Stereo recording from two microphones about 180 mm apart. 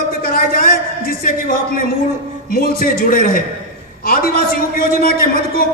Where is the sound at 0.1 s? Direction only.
50° left (ahead or behind).